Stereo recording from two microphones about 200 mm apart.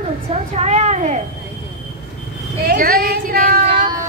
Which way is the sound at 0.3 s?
35° right (ahead or behind).